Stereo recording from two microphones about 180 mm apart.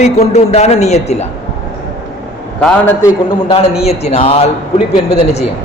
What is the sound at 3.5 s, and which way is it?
A man's voice, 35° left (ahead or behind).